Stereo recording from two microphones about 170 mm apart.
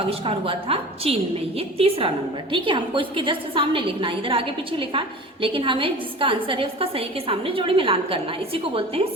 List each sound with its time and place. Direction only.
0.1 s a woman's voice: 35° right (ahead or behind)